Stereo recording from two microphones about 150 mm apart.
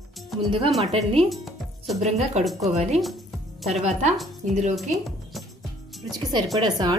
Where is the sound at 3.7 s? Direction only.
45° right (ahead or behind).